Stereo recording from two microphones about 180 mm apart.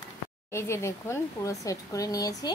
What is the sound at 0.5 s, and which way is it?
Speech, 15° left (ahead or behind).